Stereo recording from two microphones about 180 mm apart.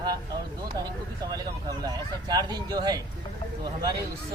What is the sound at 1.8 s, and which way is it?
Speech, 20° right (ahead or behind).